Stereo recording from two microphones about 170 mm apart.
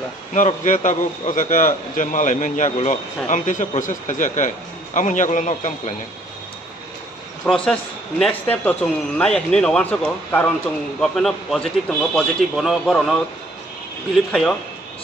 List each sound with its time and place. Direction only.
0.3 s a man's voice: 45° left (ahead or behind)
7.4 s a man's voice: 5° left (ahead or behind)
14.3 s a man's voice: centre (ahead or behind)